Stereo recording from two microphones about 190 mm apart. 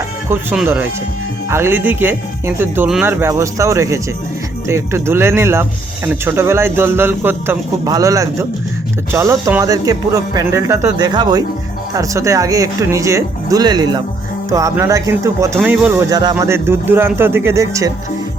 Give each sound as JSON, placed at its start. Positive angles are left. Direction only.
{"t": 0.3, "sound": "speech", "side_deg": -10}